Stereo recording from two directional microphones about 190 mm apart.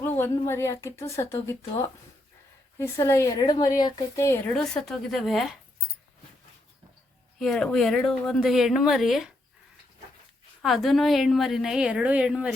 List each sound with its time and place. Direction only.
0.0 s speech: 10° left (ahead or behind)
4.7 s a woman's voice: centre (ahead or behind)
7.3 s a woman's voice: centre (ahead or behind)
10.6 s a woman's voice: centre (ahead or behind)